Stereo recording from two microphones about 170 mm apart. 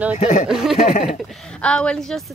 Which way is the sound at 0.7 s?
40° left (ahead or behind).